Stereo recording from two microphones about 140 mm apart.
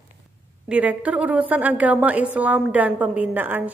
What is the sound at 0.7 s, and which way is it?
A woman's voice, 10° right (ahead or behind).